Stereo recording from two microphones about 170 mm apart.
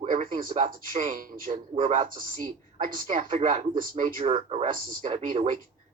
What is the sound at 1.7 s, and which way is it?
Speech, 40° right (ahead or behind).